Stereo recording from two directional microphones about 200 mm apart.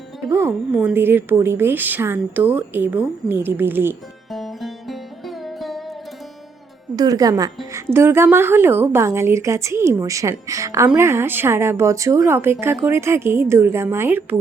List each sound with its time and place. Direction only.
0.3 s a woman's voice: 10° right (ahead or behind)
4.3 s music: centre (ahead or behind)
6.9 s a woman's voice: 20° right (ahead or behind)